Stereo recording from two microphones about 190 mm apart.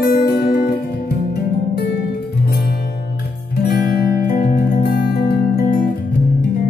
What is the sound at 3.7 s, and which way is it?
Music, 50° left (ahead or behind).